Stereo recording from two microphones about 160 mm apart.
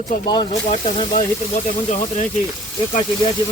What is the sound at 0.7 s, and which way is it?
Speech, 35° left (ahead or behind).